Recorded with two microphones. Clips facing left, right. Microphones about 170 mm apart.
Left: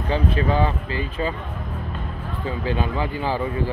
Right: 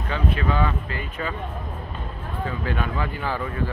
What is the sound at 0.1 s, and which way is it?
Speech, 30° left (ahead or behind).